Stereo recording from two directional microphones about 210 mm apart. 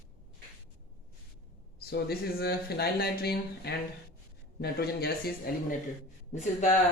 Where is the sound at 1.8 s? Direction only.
50° left (ahead or behind).